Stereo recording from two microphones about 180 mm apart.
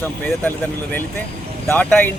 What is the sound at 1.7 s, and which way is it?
Speech, 10° left (ahead or behind).